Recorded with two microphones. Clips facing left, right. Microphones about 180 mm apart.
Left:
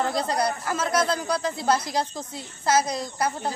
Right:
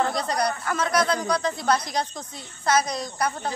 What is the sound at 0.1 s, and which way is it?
Speech, 25° left (ahead or behind).